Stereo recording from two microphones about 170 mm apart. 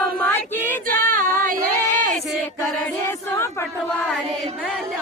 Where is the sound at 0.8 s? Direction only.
55° right (ahead or behind).